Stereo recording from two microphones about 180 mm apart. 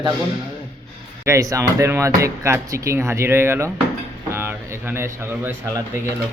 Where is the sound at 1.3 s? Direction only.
20° right (ahead or behind).